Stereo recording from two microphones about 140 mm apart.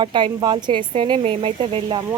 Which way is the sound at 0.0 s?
35° right (ahead or behind).